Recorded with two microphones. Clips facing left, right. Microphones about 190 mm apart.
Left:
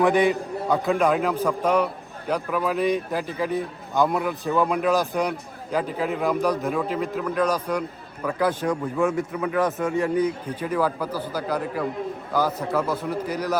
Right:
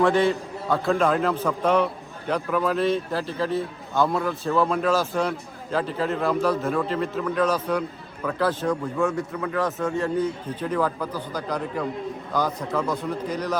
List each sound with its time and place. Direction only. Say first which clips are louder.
0.0 s a man's voice: left 1 dB; 15° left (ahead or behind)